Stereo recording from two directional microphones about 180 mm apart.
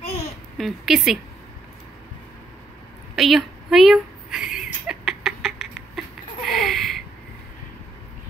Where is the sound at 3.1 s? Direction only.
Centre (ahead or behind).